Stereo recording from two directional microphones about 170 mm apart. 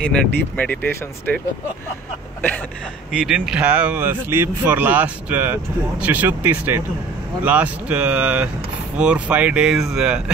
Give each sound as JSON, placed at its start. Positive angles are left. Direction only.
{"t": 0.0, "sound": "speech", "side_deg": 10}
{"t": 3.3, "sound": "speech", "side_deg": -5}